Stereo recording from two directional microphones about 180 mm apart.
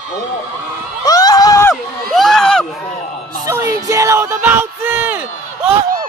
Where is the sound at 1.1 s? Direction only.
20° left (ahead or behind).